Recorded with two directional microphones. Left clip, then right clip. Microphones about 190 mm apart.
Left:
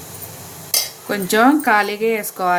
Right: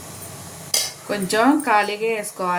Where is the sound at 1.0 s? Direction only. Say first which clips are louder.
Left 4 dB; 40° left (ahead or behind).